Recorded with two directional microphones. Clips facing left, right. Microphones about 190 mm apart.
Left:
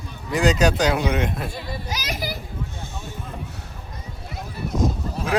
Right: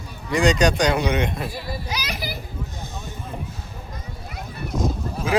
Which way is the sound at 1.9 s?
45° left (ahead or behind).